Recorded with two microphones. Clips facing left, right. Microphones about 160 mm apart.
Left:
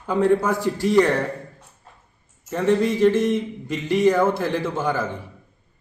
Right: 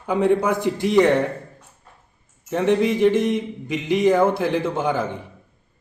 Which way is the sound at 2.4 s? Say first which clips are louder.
Right 1 dB; 15° right (ahead or behind).